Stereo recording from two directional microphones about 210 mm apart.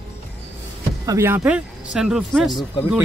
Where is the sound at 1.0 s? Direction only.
15° right (ahead or behind).